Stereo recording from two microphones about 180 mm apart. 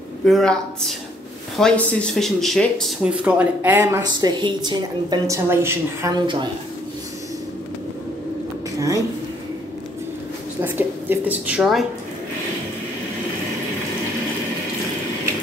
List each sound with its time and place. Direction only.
0.2 s speech: 5° left (ahead or behind)
4.0 s a woman's voice: 25° right (ahead or behind)
8.7 s a sound: 20° right (ahead or behind)
10.6 s a woman's voice: 10° right (ahead or behind)